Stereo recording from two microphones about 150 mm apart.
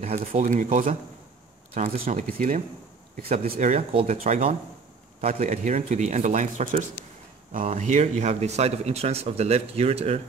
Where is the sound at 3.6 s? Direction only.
45° right (ahead or behind).